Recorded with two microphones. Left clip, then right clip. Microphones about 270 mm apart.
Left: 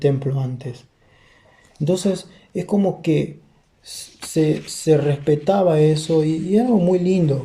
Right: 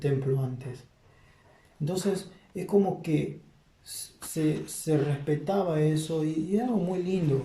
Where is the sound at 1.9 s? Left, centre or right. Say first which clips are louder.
Left 9 dB; left.